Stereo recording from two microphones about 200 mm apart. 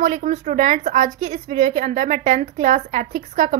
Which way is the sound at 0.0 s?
35° right (ahead or behind).